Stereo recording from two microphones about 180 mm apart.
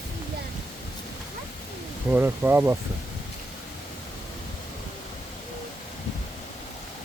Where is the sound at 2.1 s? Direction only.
10° right (ahead or behind).